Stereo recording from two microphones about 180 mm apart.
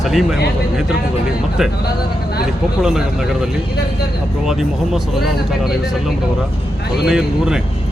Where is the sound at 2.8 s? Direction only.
5° right (ahead or behind).